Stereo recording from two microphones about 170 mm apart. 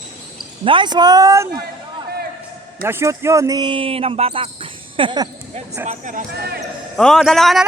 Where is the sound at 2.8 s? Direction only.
15° right (ahead or behind).